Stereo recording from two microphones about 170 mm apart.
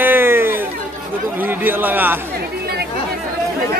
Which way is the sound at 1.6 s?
10° right (ahead or behind).